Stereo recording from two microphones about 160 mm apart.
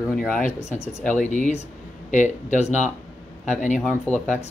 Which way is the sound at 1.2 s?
50° left (ahead or behind).